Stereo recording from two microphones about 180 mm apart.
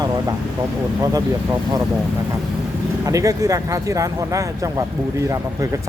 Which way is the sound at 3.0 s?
20° right (ahead or behind).